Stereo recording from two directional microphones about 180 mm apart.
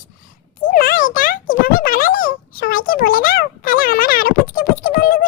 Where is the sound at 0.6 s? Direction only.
50° left (ahead or behind).